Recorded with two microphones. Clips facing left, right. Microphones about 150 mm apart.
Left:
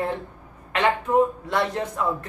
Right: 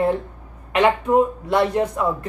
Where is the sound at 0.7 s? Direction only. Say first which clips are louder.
Right 4 dB; 10° right (ahead or behind).